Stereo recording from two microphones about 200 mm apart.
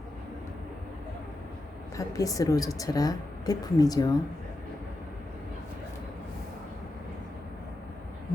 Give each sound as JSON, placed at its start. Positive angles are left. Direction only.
{"t": 2.0, "sound": "a woman's voice", "side_deg": 15}